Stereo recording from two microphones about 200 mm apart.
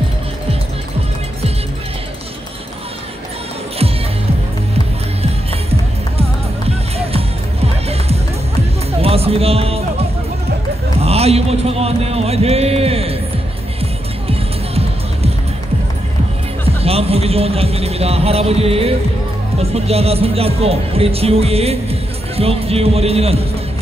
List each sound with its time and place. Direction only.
5.2 s music: 30° right (ahead or behind)
11.0 s music: 30° right (ahead or behind)
16.6 s music: 30° right (ahead or behind)
19.6 s a man's voice: 30° right (ahead or behind)